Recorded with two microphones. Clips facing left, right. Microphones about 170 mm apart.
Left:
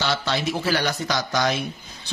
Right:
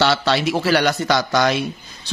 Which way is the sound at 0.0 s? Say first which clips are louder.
Right 7 dB; 75° right (ahead or behind).